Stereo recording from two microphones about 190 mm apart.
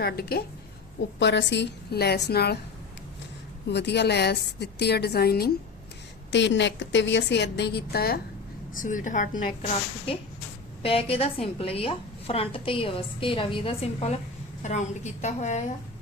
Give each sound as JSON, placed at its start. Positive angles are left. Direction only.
{"t": 0.0, "sound": "a woman's voice", "side_deg": 55}
{"t": 1.2, "sound": "a woman's voice", "side_deg": 65}
{"t": 3.7, "sound": "a woman's voice", "side_deg": 65}
{"t": 6.3, "sound": "a woman's voice", "side_deg": 70}
{"t": 10.8, "sound": "a woman's voice", "side_deg": 30}